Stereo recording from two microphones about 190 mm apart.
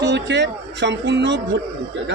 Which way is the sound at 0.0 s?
65° right (ahead or behind).